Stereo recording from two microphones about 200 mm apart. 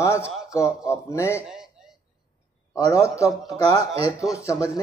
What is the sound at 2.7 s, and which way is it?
Speech, 15° left (ahead or behind).